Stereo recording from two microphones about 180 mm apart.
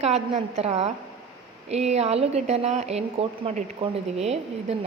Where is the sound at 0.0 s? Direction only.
35° right (ahead or behind).